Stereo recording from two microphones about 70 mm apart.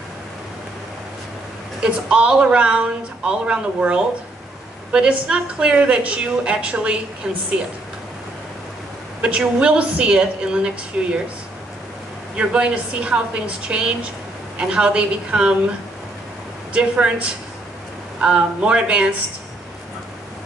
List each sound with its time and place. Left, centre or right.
1.8 s a woman's voice: centre
7.2 s a woman's voice: centre
9.2 s a woman's voice: centre
12.4 s a woman's voice: centre
16.7 s a woman's voice: centre